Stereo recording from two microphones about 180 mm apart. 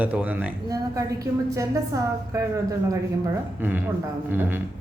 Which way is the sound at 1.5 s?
20° right (ahead or behind).